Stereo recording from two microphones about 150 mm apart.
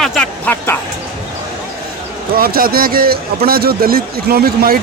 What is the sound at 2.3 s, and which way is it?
A man's voice, 80° right.